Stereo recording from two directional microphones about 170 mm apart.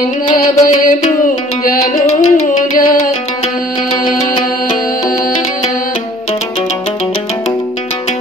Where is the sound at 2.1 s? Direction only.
40° left (ahead or behind).